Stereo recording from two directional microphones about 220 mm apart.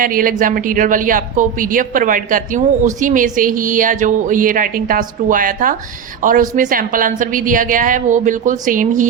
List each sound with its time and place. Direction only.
0.0 s speech: 40° right (ahead or behind)